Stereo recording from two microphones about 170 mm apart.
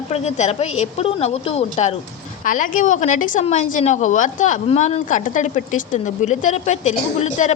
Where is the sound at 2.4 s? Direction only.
50° left (ahead or behind).